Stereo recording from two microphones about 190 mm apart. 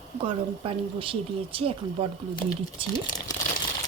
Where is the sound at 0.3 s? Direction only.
30° right (ahead or behind).